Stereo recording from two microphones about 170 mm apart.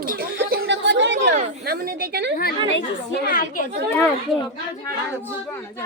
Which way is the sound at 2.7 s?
75° left (ahead or behind).